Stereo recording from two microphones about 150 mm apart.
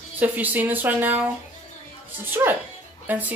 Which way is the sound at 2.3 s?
15° right (ahead or behind).